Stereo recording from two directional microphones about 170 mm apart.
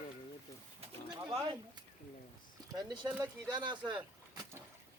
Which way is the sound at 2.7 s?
25° right (ahead or behind).